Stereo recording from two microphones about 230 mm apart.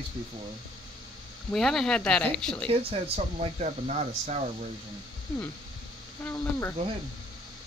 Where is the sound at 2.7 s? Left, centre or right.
Right.